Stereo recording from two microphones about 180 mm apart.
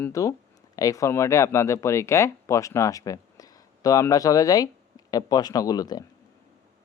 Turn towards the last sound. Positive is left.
turn(degrees=20)  # may be behind; listen again after turning